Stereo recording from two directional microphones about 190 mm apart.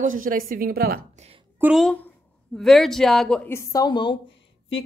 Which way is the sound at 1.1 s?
35° right (ahead or behind).